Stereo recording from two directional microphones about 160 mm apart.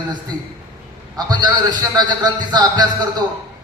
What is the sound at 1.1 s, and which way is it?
A man's voice, 25° right (ahead or behind).